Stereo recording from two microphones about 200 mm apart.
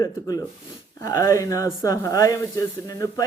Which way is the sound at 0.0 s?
15° left (ahead or behind).